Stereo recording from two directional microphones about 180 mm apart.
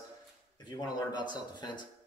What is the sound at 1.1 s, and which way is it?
Speech, 25° left (ahead or behind).